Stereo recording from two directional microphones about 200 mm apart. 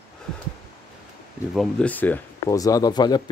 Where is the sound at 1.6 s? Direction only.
5° left (ahead or behind).